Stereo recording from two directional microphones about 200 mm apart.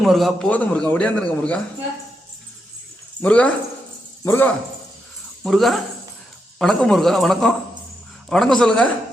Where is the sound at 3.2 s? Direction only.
5° left (ahead or behind).